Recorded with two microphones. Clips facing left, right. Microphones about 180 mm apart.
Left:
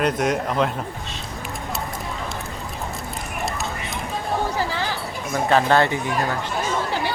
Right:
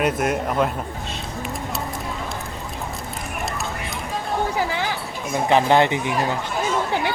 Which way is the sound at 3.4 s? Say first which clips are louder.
Left 1 dB; centre (ahead or behind).